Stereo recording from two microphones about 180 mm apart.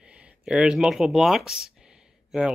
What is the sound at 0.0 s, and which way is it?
Speech, 5° right (ahead or behind).